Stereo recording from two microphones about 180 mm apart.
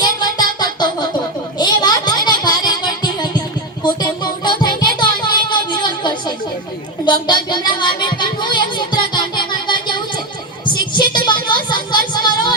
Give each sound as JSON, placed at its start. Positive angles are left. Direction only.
{"t": 0.0, "sound": "music", "side_deg": 25}
{"t": 4.9, "sound": "a sound", "side_deg": 25}
{"t": 7.0, "sound": "music", "side_deg": 25}
{"t": 10.9, "sound": "child singing", "side_deg": 25}